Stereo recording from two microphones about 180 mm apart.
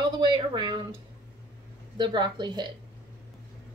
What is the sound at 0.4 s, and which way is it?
Speech, 25° right (ahead or behind).